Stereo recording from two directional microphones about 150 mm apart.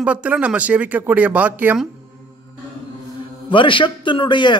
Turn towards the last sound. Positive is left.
turn(degrees=30)  # may be behind; listen again after turning